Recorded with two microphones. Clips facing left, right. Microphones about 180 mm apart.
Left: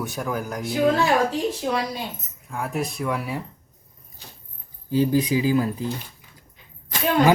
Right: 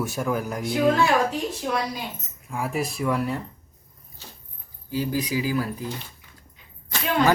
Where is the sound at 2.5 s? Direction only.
Centre (ahead or behind).